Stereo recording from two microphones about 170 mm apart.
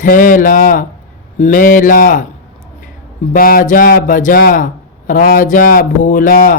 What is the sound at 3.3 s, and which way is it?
Speech, 55° left (ahead or behind).